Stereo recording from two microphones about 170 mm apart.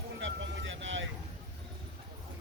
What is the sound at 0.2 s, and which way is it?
Vehicle, 90° right.